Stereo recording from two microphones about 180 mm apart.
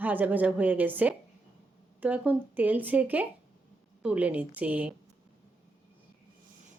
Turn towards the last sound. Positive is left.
turn(degrees=-10)  # may be behind; listen again after turning